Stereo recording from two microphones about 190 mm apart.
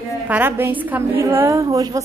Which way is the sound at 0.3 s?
10° right (ahead or behind).